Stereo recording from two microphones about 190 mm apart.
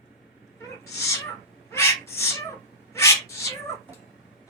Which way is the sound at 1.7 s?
15° left (ahead or behind).